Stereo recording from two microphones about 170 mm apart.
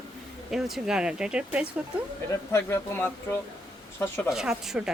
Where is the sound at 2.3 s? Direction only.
15° left (ahead or behind).